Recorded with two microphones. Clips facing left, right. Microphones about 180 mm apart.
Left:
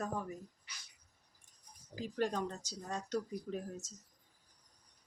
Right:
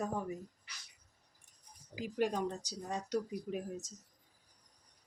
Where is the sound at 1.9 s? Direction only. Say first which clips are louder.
Right 2 dB; 10° right (ahead or behind).